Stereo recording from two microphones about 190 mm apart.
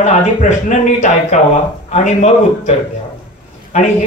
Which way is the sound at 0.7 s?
40° left (ahead or behind).